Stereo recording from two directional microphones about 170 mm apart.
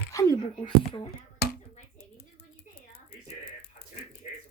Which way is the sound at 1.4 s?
70° left (ahead or behind).